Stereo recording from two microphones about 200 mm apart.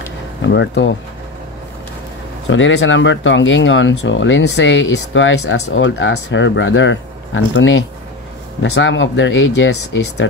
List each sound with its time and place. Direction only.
0.4 s speech: 60° left (ahead or behind)
2.5 s speech: 65° left (ahead or behind)